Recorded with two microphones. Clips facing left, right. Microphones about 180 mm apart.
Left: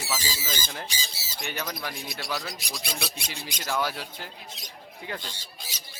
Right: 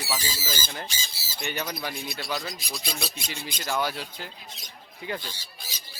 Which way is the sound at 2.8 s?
70° left (ahead or behind).